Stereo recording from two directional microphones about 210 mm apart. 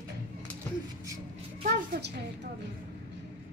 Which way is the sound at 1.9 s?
50° right (ahead or behind).